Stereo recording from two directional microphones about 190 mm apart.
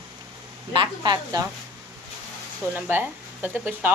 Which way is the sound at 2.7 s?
10° right (ahead or behind).